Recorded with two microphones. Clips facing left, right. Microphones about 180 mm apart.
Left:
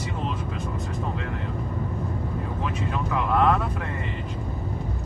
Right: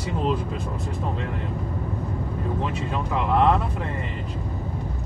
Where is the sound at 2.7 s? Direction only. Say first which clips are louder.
Right 1 dB; 25° right (ahead or behind).